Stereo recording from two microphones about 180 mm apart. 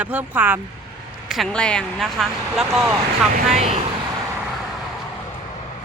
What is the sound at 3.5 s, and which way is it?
Speech, 40° right (ahead or behind).